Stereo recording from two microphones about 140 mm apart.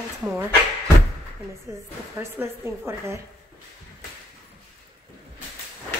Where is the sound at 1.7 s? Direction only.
20° right (ahead or behind).